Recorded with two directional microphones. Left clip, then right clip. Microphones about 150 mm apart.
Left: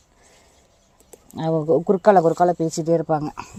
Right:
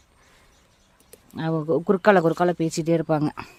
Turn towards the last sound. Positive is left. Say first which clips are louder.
# left 2 dB
turn(degrees=-30)  # may be behind; listen again after turning